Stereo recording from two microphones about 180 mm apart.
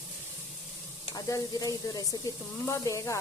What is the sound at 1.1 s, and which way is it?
Speech, 20° left (ahead or behind).